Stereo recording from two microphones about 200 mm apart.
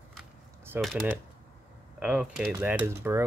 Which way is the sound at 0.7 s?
Centre (ahead or behind).